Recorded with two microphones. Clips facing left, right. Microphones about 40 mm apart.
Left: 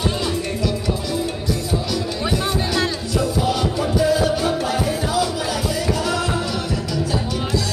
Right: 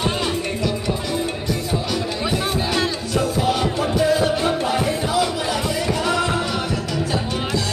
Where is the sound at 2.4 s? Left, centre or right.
Centre.